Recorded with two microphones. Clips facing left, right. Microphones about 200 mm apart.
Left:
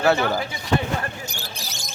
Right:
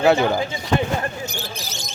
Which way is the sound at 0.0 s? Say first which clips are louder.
Right 3 dB; 20° right (ahead or behind).